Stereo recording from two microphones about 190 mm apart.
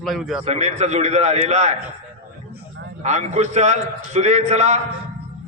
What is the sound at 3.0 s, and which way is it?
A man's voice, 35° right (ahead or behind).